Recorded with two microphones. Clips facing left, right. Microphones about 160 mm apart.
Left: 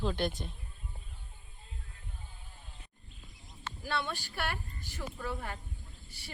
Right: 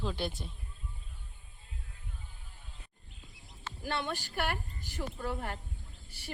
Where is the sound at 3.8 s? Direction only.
15° right (ahead or behind).